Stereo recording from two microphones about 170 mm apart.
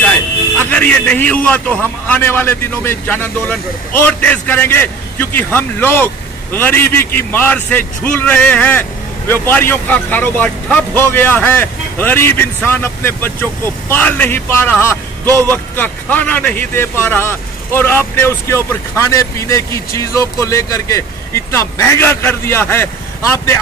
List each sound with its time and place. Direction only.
0.7 s a man's voice: 10° left (ahead or behind)